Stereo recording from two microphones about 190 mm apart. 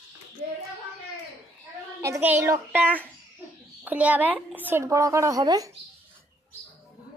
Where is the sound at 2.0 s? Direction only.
15° right (ahead or behind).